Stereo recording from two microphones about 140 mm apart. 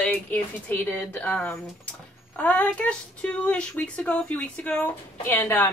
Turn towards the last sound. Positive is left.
turn(degrees=15)  # may be behind; listen again after turning